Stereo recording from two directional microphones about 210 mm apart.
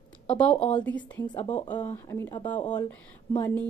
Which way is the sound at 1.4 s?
30° left (ahead or behind).